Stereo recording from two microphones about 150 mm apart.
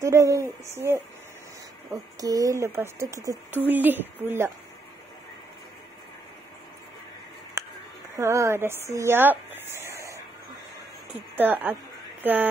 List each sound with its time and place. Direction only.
0.0 s speech: 20° right (ahead or behind)
2.1 s speech: 25° right (ahead or behind)
7.6 s a sound: 20° right (ahead or behind)
8.2 s speech: 20° right (ahead or behind)
11.3 s speech: 10° right (ahead or behind)